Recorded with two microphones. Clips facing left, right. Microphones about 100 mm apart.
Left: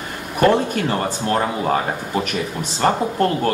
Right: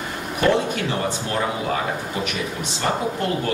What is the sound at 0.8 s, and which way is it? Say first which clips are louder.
Speech: left 4 dB; 40° left (ahead or behind).